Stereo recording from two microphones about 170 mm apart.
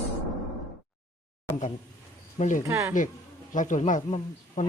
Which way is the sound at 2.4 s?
50° left (ahead or behind).